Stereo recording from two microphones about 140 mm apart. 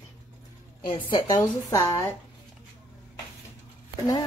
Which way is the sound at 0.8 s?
40° left (ahead or behind).